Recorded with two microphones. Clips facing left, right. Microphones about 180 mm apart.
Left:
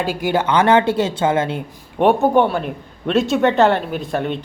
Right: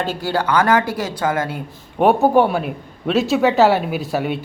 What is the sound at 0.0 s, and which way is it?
A woman's voice, 15° left (ahead or behind).